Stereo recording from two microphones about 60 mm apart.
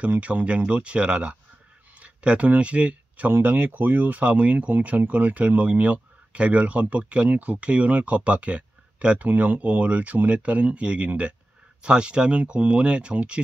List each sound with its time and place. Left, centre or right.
0.0 s speech: right
3.3 s speech: right